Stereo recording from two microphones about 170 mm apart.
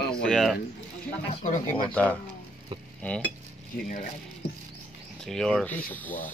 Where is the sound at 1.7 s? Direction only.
10° left (ahead or behind).